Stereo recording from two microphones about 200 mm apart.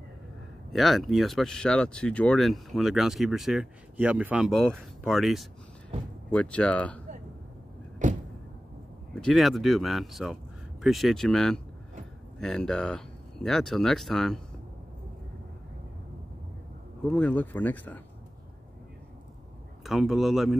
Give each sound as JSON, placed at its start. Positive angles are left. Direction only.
{"t": 0.7, "sound": "speech", "side_deg": 0}
{"t": 8.0, "sound": "a sound", "side_deg": -40}
{"t": 9.1, "sound": "speech", "side_deg": 0}
{"t": 17.1, "sound": "speech", "side_deg": 5}
{"t": 19.8, "sound": "speech", "side_deg": 0}